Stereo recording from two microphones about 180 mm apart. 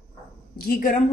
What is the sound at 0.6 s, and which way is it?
Speech, 55° left (ahead or behind).